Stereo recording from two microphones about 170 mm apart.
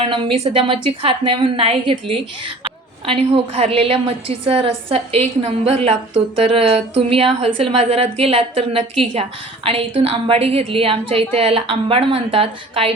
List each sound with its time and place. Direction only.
0.0 s a woman's voice: 30° right (ahead or behind)